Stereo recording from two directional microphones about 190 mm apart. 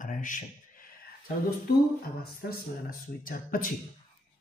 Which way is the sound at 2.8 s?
45° left (ahead or behind).